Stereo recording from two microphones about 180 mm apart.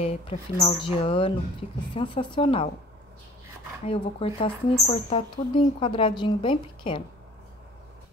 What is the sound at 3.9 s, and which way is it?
Speech, 30° left (ahead or behind).